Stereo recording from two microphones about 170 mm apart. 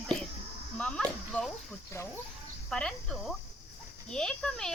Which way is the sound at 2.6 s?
5° left (ahead or behind).